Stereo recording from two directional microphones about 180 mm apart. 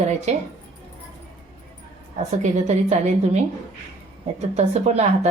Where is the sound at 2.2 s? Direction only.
40° right (ahead or behind).